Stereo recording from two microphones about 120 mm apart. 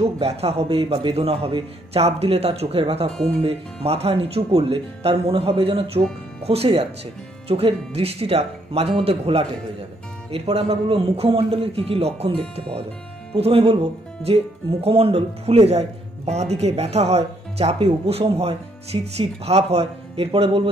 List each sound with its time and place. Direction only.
0.0 s speech: 55° right (ahead or behind)